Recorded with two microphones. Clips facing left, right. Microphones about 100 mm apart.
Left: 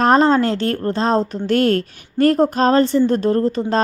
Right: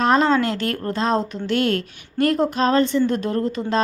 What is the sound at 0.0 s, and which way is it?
Speech, 40° left (ahead or behind).